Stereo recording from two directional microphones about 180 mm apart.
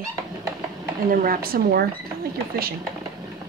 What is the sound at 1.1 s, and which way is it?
Speech, 55° right (ahead or behind).